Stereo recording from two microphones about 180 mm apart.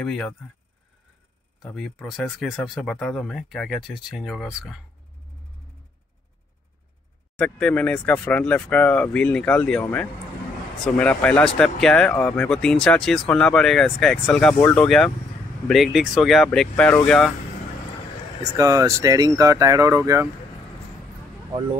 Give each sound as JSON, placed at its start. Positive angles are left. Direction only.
{"t": 0.0, "sound": "speech", "side_deg": 5}
{"t": 1.6, "sound": "speech", "side_deg": 0}
{"t": 7.3, "sound": "speech", "side_deg": 5}
{"t": 18.4, "sound": "speech", "side_deg": -20}